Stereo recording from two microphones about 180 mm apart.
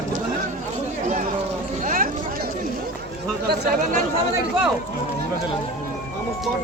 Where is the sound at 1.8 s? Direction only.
50° right (ahead or behind).